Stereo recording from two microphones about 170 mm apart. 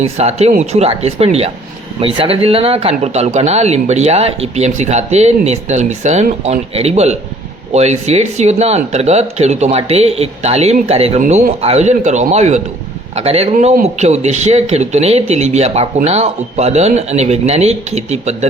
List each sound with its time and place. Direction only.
0.0 s speech: 40° right (ahead or behind)